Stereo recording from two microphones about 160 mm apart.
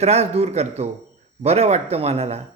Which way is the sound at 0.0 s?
40° right (ahead or behind).